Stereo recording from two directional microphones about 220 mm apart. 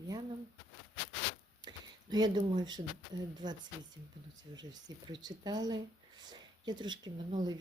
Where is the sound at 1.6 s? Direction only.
20° right (ahead or behind).